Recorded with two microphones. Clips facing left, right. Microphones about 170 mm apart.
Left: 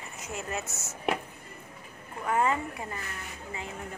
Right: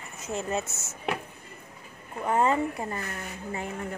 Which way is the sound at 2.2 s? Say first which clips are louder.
Right 3 dB; 30° right (ahead or behind).